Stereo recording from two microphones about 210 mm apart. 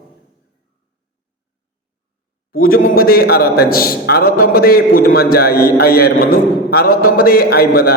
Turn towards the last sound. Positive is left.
turn(degrees=45)  # may be behind; listen again after turning